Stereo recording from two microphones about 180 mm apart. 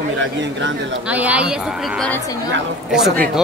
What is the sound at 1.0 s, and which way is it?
Speech, 10° right (ahead or behind).